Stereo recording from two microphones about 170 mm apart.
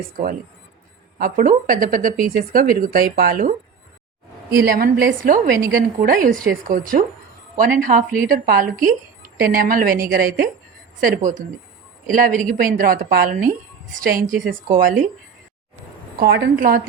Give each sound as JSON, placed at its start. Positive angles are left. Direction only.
{"t": 1.2, "sound": "a woman's voice", "side_deg": -55}
{"t": 4.6, "sound": "a woman's voice", "side_deg": -60}
{"t": 16.1, "sound": "a woman's voice", "side_deg": -70}